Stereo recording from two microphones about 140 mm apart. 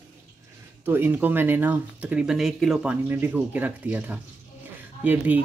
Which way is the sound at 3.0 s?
15° right (ahead or behind).